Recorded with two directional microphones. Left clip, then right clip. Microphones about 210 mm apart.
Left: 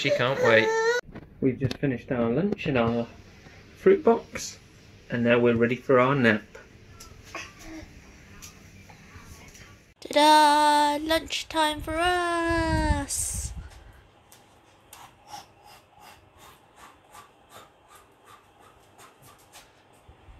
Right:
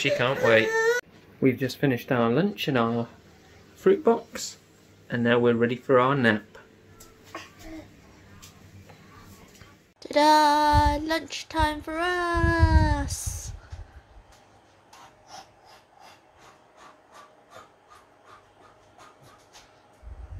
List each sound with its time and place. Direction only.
0.0 s baby cry: 5° right (ahead or behind)
1.8 s speech: 20° right (ahead or behind)
2.7 s speech: 5° right (ahead or behind)
3.8 s child singing: centre (ahead or behind)
9.9 s child singing: 5° left (ahead or behind)